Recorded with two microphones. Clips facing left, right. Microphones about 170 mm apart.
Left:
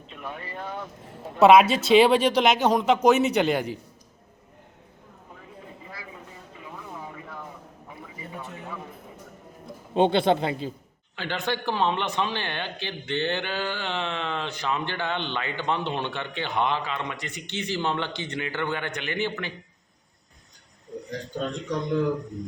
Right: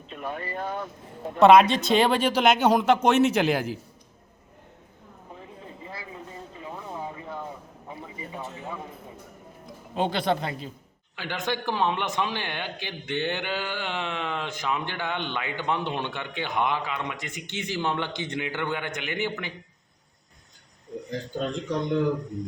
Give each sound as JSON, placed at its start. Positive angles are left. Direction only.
{"t": 0.1, "sound": "speech", "side_deg": -45}
{"t": 1.4, "sound": "speech", "side_deg": 5}
{"t": 6.6, "sound": "a sound", "side_deg": -30}
{"t": 9.9, "sound": "speech", "side_deg": 25}
{"t": 11.2, "sound": "a man's voice", "side_deg": -15}
{"t": 21.3, "sound": "speech", "side_deg": 0}